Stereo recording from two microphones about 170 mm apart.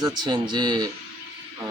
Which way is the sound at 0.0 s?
25° right (ahead or behind).